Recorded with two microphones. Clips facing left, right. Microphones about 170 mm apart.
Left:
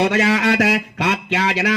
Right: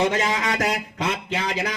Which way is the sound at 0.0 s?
80° left.